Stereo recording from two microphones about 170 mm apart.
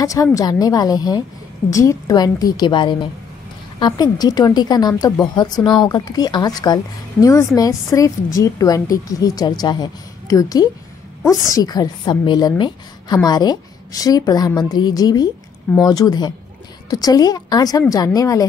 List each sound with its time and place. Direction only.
0.0 s speech: 20° left (ahead or behind)